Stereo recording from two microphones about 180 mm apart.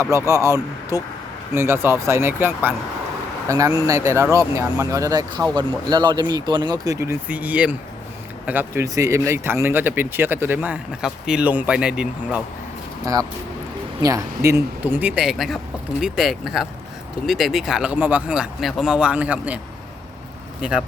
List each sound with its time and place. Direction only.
0.0 s speech: 15° right (ahead or behind)
14.0 s speech: 20° right (ahead or behind)
20.6 s speech: 5° right (ahead or behind)